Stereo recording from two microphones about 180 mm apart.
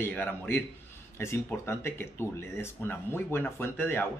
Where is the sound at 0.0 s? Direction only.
10° left (ahead or behind).